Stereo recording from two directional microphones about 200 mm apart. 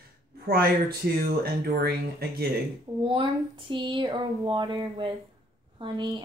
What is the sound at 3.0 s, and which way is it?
Speech, 25° right (ahead or behind).